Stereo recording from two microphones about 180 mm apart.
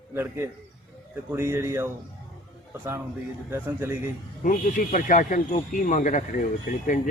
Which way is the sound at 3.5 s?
15° right (ahead or behind).